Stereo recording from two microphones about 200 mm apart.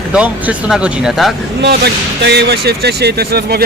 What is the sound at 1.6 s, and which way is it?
Speech, 55° right (ahead or behind).